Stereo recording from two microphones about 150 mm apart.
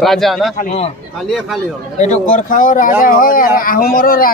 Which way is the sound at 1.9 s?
50° left (ahead or behind).